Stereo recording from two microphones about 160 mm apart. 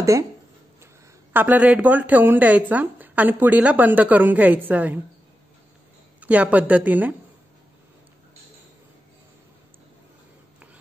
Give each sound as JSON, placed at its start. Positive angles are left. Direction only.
{"t": 0.0, "sound": "speech", "side_deg": -20}
{"t": 1.3, "sound": "speech", "side_deg": -10}
{"t": 6.2, "sound": "speech", "side_deg": -10}